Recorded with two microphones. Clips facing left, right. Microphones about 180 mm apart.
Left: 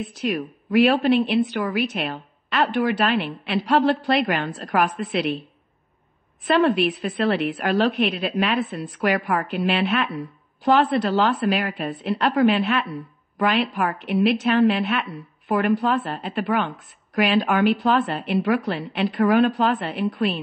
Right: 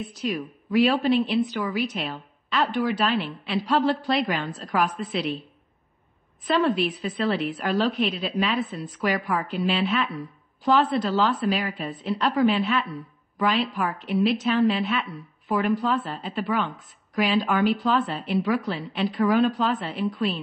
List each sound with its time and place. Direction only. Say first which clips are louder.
0.2 s a woman's voice: left 3 dB; 60° left (ahead or behind)
6.4 s a woman's voice: left 4 dB; 65° left (ahead or behind)